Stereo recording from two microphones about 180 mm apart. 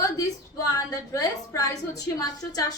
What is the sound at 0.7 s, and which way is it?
A woman's voice, 20° left (ahead or behind).